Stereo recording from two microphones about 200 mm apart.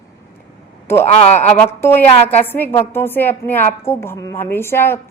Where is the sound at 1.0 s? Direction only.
35° left (ahead or behind).